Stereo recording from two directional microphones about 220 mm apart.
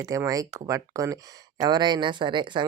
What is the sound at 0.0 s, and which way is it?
Speech, 15° right (ahead or behind).